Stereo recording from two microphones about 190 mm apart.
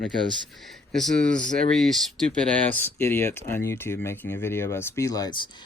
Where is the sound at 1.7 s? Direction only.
Centre (ahead or behind).